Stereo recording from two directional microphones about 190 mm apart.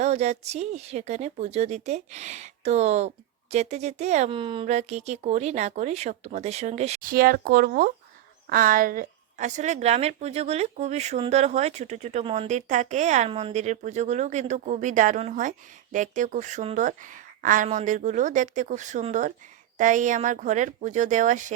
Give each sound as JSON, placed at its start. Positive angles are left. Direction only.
{"t": 0.0, "sound": "a woman's voice", "side_deg": -35}
{"t": 7.0, "sound": "a woman's voice", "side_deg": -50}